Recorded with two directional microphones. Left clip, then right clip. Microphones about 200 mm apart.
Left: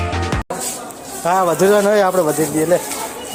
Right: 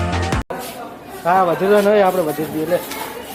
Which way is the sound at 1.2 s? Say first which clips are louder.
Left 1 dB; 45° left (ahead or behind).